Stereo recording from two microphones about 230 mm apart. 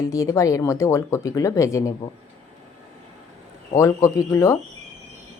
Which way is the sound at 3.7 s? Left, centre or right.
Centre.